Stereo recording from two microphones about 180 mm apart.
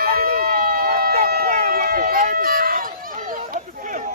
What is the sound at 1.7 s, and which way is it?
Run, 55° right (ahead or behind).